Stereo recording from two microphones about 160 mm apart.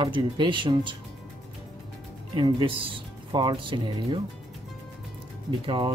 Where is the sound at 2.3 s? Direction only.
30° right (ahead or behind).